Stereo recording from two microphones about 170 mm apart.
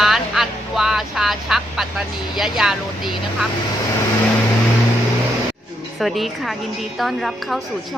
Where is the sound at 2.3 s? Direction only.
Centre (ahead or behind).